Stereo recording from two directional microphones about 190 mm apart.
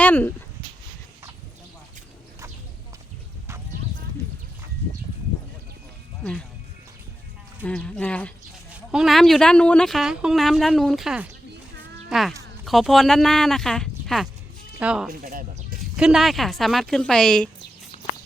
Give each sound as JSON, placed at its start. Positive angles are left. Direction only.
{"t": 0.0, "sound": "speech", "side_deg": 10}
{"t": 7.6, "sound": "speech", "side_deg": 5}
{"t": 8.7, "sound": "speech", "side_deg": -5}
{"t": 15.2, "sound": "speech", "side_deg": -45}
{"t": 15.8, "sound": "speech", "side_deg": -5}
{"t": 17.9, "sound": "a sound", "side_deg": 35}